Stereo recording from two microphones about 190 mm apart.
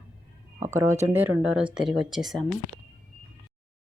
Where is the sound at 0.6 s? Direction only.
15° right (ahead or behind).